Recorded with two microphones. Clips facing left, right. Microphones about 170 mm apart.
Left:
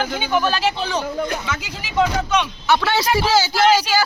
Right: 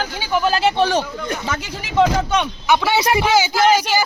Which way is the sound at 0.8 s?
80° right.